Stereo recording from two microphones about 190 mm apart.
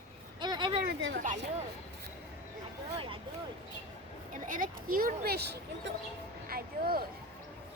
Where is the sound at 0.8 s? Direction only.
60° right (ahead or behind).